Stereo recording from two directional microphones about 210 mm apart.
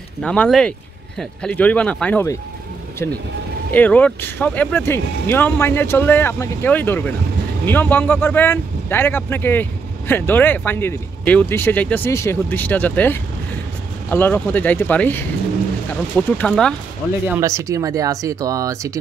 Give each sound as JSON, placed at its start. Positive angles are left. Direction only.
{"t": 0.2, "sound": "speech", "side_deg": 5}
{"t": 3.7, "sound": "speech", "side_deg": 5}
{"t": 17.3, "sound": "speech", "side_deg": -15}